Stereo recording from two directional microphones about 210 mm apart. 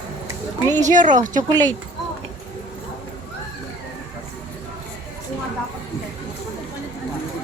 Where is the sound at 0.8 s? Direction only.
35° right (ahead or behind).